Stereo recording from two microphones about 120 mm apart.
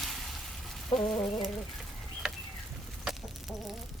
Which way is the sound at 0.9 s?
40° left (ahead or behind).